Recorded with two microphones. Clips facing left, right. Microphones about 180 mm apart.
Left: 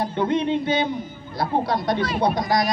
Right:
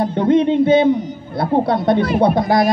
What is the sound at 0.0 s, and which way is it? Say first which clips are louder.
A man's voice: right 8 dB; 50° right (ahead or behind).